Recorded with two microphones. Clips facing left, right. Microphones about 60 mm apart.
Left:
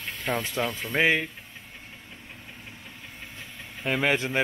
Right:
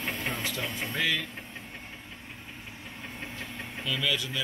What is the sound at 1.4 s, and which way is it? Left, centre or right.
Vehicle, centre.